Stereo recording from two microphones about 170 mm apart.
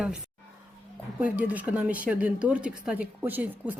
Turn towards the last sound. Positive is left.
turn(degrees=-10)  # may be behind; listen again after turning